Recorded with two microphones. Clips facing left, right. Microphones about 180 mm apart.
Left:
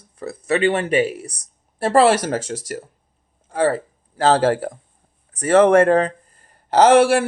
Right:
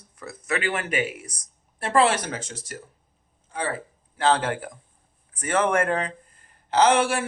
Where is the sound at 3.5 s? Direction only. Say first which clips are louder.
Left 11 dB; 40° left (ahead or behind).